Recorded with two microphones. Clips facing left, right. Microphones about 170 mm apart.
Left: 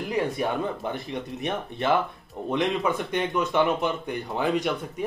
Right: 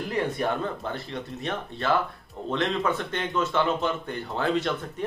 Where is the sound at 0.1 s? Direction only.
10° left (ahead or behind).